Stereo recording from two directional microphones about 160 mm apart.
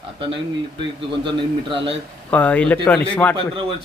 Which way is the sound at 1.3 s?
35° right (ahead or behind).